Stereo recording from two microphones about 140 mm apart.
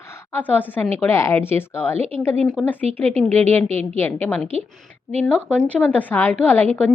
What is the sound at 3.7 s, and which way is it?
Speech, 50° right (ahead or behind).